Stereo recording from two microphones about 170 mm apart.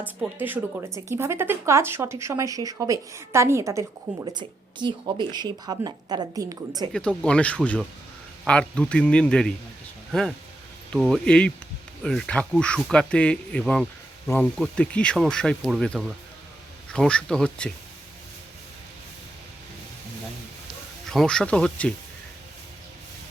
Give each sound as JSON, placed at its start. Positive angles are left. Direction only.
{"t": 0.0, "sound": "speech", "side_deg": -10}
{"t": 6.9, "sound": "speech", "side_deg": 5}
{"t": 21.1, "sound": "speech", "side_deg": 5}